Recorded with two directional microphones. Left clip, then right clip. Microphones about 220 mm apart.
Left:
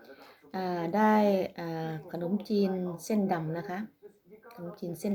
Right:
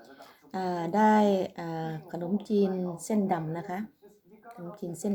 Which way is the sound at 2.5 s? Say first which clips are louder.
Right 3 dB; 30° left (ahead or behind).